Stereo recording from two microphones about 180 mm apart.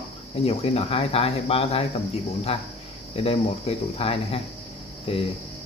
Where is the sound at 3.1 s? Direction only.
35° left (ahead or behind).